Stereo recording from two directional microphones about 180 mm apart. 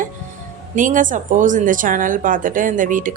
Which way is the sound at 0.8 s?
45° right (ahead or behind).